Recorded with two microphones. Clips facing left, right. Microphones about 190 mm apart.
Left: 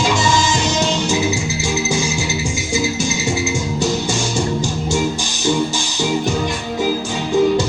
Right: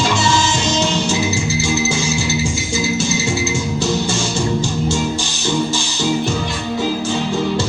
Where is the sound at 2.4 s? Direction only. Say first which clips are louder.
Even; 15° left (ahead or behind).